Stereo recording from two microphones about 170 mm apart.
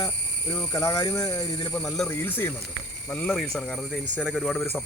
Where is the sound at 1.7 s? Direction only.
5° left (ahead or behind).